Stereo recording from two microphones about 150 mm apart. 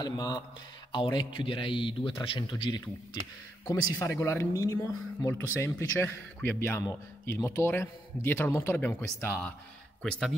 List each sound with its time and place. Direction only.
0.0 s a man's voice: 25° left (ahead or behind)
3.6 s speech: 25° left (ahead or behind)